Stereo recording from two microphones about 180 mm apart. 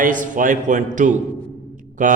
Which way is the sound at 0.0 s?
45° right (ahead or behind).